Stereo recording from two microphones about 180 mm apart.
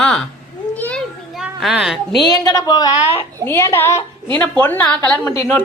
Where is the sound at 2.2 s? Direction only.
20° left (ahead or behind); by 5.3 s 5° left (ahead or behind).